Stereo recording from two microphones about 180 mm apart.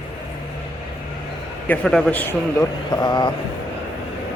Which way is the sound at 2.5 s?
20° left (ahead or behind).